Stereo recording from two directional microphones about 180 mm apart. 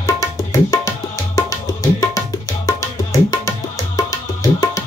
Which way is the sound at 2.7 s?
15° left (ahead or behind).